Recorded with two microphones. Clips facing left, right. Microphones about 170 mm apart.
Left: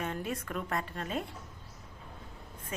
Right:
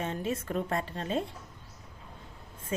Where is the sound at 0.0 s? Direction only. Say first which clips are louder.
Right 3 dB; 25° right (ahead or behind).